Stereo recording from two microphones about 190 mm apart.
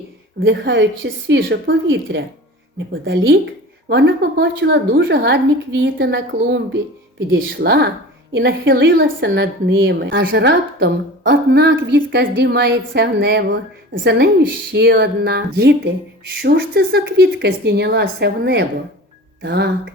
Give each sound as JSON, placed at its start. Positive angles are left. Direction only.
{"t": 0.3, "sound": "a woman's voice", "side_deg": -60}
{"t": 7.6, "sound": "a woman's voice", "side_deg": -60}
{"t": 8.3, "sound": "a woman's voice", "side_deg": -75}